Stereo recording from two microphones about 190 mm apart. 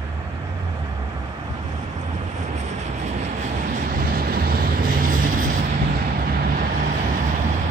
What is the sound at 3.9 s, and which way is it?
Vehicle, 50° right (ahead or behind).